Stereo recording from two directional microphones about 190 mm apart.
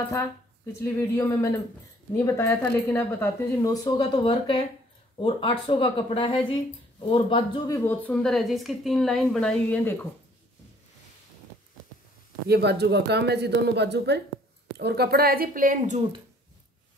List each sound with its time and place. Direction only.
0.7 s a woman's voice: 15° left (ahead or behind)
12.4 s speech: 60° right (ahead or behind)